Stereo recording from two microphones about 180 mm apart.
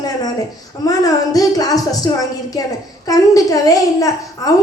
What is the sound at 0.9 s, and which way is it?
A child's voice, 20° left (ahead or behind).